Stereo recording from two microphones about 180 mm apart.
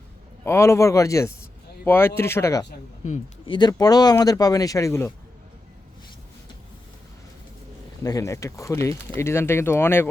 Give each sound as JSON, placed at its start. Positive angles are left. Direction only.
{"t": 0.4, "sound": "speech", "side_deg": 15}
{"t": 8.0, "sound": "speech", "side_deg": 20}